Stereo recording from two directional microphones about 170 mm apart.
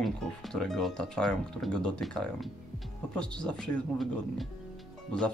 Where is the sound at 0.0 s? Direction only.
Centre (ahead or behind).